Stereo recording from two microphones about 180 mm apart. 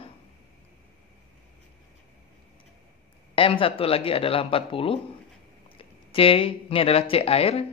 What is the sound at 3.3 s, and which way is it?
Speech, 30° left (ahead or behind).